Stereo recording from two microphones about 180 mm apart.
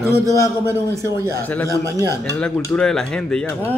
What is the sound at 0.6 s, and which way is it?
Speech, 15° right (ahead or behind).